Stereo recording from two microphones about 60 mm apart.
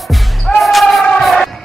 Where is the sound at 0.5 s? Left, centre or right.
Centre.